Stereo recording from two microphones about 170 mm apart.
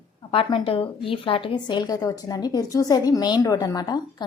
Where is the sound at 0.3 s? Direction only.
30° left (ahead or behind).